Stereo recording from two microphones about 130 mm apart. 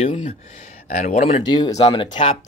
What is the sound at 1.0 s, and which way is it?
Speech, 55° left (ahead or behind).